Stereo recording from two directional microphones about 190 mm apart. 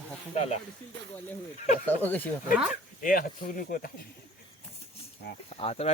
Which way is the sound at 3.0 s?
45° left (ahead or behind).